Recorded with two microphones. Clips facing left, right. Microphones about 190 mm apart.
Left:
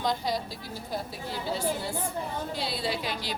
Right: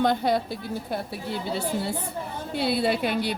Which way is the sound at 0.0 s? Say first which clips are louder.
Right 7 dB; 60° right (ahead or behind).